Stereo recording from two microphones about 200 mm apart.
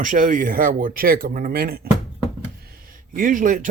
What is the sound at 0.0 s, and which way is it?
A man's voice, 40° right (ahead or behind).